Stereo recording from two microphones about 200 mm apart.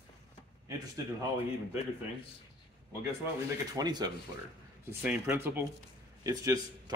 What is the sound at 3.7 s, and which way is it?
Speech, 20° right (ahead or behind).